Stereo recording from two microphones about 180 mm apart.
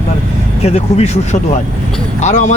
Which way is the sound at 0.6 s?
35° left (ahead or behind).